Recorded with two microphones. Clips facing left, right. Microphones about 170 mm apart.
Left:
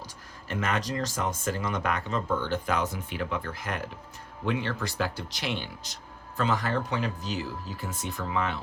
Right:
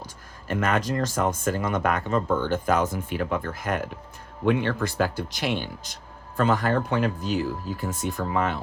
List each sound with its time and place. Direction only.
0.4 s speech: 50° right (ahead or behind)